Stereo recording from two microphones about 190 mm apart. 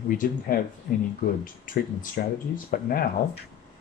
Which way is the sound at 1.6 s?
45° left (ahead or behind).